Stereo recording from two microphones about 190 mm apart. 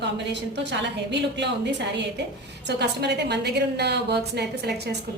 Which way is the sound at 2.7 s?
60° right (ahead or behind).